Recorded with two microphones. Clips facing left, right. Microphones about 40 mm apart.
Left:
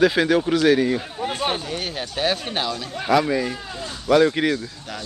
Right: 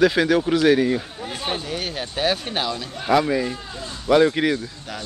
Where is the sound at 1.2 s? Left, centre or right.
Left.